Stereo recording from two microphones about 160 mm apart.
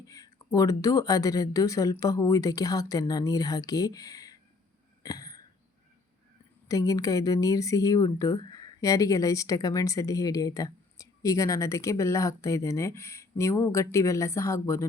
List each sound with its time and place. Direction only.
0.0 s speech: 20° left (ahead or behind)
5.0 s a sound: 20° left (ahead or behind)
6.7 s speech: 20° left (ahead or behind)